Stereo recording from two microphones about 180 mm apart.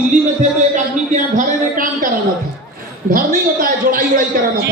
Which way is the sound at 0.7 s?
45° right (ahead or behind).